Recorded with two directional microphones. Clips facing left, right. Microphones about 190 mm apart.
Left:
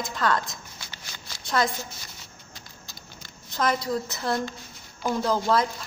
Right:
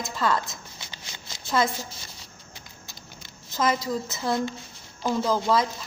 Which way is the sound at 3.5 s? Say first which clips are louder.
Even; centre (ahead or behind).